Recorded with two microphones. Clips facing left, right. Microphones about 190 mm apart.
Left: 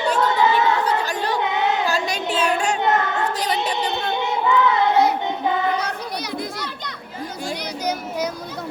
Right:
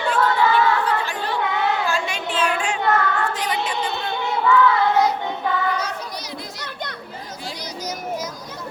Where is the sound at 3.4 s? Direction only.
35° left (ahead or behind).